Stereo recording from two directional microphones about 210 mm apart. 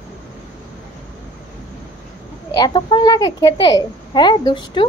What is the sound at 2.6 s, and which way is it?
A child's voice, 20° left (ahead or behind).